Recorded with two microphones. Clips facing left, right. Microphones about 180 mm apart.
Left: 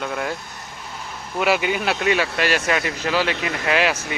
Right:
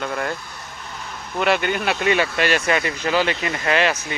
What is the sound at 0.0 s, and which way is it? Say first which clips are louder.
Speech: even; centre (ahead or behind).